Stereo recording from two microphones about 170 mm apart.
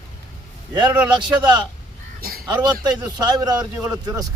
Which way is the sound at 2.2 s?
60° right (ahead or behind).